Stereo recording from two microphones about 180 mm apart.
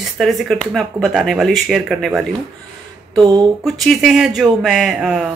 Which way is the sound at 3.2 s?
20° right (ahead or behind).